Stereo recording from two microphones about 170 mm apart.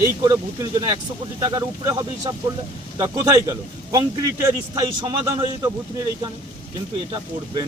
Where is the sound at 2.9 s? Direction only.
25° right (ahead or behind).